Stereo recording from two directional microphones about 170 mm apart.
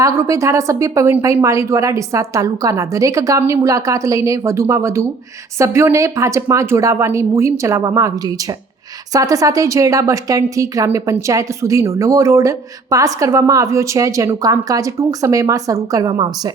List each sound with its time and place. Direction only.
0.0 s a woman's voice: 20° right (ahead or behind)